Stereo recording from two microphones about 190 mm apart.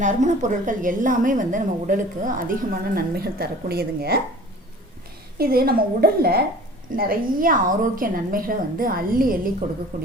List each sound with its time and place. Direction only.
0.0 s a woman's voice: 40° right (ahead or behind); by 4.2 s 55° right (ahead or behind)
5.4 s a woman's voice: 50° right (ahead or behind)